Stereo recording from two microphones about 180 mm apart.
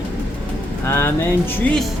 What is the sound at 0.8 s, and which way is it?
Music, 10° left (ahead or behind).